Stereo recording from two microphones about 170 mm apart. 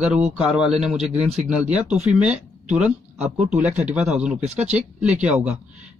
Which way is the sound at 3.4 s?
45° right (ahead or behind).